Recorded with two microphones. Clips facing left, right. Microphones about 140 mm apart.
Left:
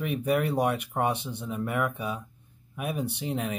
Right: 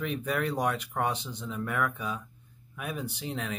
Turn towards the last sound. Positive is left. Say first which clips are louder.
# left 4 dB
turn(degrees=20)  # may be behind; listen again after turning